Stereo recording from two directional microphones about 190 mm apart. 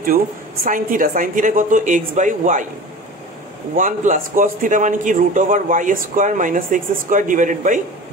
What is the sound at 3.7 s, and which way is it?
A man's voice, 45° right (ahead or behind).